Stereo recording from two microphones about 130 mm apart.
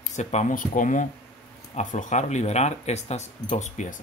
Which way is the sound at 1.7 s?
65° left (ahead or behind).